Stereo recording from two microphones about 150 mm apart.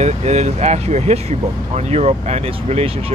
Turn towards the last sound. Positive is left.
turn(degrees=-40)  # may be behind; listen again after turning